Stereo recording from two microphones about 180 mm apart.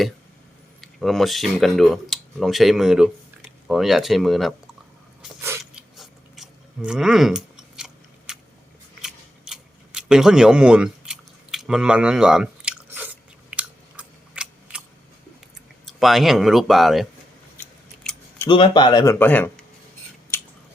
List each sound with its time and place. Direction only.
0.8 s speech: centre (ahead or behind)
5.4 s biting: 15° right (ahead or behind)
6.0 s chewing: centre (ahead or behind)
8.3 s a sound: 5° right (ahead or behind)
9.0 s scissors: centre (ahead or behind)
15.9 s speech: centre (ahead or behind)
17.6 s scissors: 5° left (ahead or behind)
18.4 s speech: 25° left (ahead or behind)
19.2 s speech: 10° left (ahead or behind)